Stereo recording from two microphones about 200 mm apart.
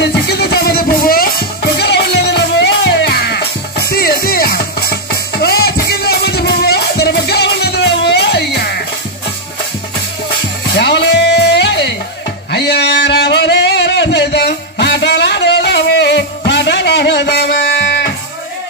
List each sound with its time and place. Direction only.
0.0 s music: 55° left (ahead or behind)
10.8 s music: 55° left (ahead or behind)